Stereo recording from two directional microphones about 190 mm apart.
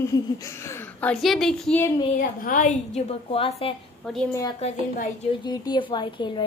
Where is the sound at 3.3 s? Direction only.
30° left (ahead or behind).